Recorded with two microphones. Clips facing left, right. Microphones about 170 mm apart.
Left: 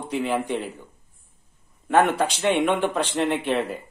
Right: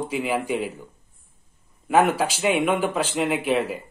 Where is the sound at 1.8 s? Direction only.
5° right (ahead or behind).